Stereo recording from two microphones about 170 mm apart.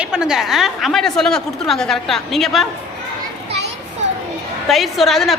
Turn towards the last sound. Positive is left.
turn(degrees=0)  # may be behind; listen again after turning